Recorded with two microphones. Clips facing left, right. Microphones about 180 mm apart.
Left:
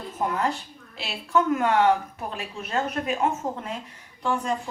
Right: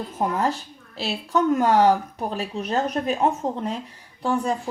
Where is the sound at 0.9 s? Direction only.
35° right (ahead or behind).